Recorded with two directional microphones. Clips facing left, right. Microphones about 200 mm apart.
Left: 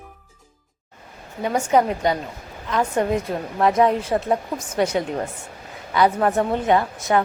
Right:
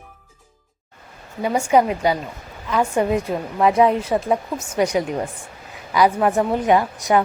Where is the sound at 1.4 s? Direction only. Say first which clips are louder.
Right 2 dB; 10° right (ahead or behind).